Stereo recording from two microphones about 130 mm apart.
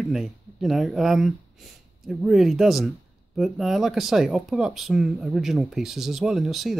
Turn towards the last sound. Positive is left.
turn(degrees=0)  # may be behind; listen again after turning